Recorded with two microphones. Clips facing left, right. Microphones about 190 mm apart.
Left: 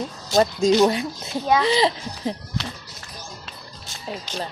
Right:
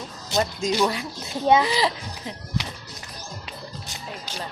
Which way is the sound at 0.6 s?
25° left (ahead or behind).